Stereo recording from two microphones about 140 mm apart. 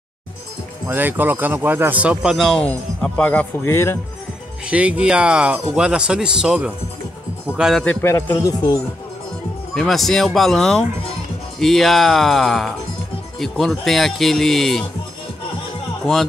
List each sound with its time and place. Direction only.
0.8 s speech: 15° right (ahead or behind); by 4.0 s 20° left (ahead or behind)
4.6 s speech: 5° right (ahead or behind)
7.8 s a man's voice: 15° left (ahead or behind)
9.8 s speech: centre (ahead or behind)